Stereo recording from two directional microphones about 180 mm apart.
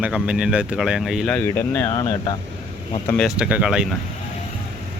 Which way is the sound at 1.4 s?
15° left (ahead or behind).